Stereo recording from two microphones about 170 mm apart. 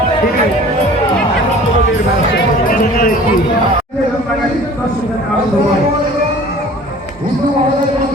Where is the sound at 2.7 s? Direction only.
55° left (ahead or behind).